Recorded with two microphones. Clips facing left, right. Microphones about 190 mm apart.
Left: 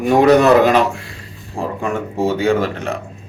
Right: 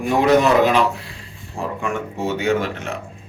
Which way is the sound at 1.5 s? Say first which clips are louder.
Left 3 dB; 35° left (ahead or behind).